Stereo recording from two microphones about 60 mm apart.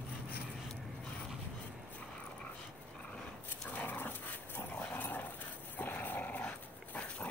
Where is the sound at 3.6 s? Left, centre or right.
Left.